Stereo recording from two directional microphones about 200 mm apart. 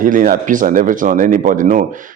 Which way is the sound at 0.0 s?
45° right (ahead or behind).